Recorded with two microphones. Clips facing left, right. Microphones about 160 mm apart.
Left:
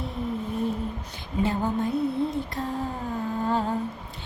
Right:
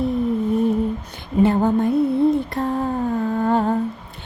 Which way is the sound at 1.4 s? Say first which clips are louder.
Right 9 dB; 60° right (ahead or behind).